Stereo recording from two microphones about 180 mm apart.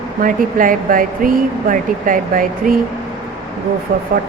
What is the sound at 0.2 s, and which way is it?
Speech, 50° right (ahead or behind).